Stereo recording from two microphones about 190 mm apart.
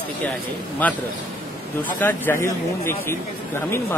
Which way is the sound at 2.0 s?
10° left (ahead or behind).